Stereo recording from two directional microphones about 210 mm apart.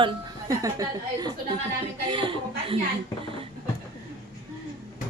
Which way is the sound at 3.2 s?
25° right (ahead or behind).